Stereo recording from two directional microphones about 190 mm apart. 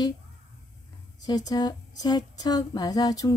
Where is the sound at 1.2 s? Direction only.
20° left (ahead or behind).